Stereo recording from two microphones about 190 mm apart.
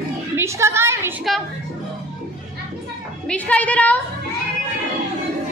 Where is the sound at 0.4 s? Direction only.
15° right (ahead or behind).